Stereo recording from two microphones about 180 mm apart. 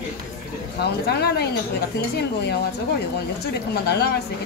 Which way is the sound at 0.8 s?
65° left (ahead or behind).